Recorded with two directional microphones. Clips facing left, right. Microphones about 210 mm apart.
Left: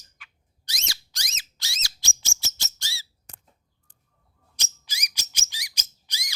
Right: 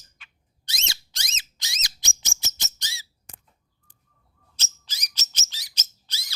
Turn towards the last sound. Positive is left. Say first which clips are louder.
# left 1 dB
turn(degrees=15)  # may be behind; listen again after turning